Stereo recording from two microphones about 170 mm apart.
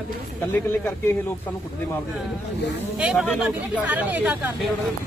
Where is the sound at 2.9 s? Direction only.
5° right (ahead or behind).